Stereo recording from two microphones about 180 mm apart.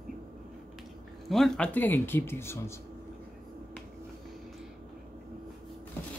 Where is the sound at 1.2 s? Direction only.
Centre (ahead or behind).